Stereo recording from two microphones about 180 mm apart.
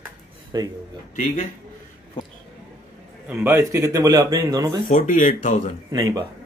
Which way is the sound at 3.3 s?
15° right (ahead or behind).